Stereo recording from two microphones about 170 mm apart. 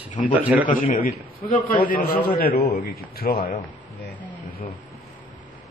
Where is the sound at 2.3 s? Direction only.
70° left (ahead or behind).